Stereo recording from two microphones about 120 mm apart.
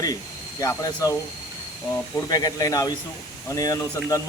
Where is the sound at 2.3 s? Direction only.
30° left (ahead or behind).